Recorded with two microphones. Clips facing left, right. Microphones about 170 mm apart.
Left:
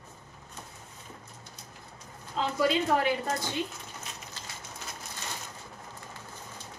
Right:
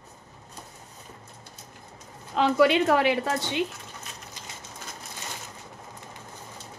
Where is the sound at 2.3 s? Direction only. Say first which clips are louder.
Right 7 dB; 75° right (ahead or behind).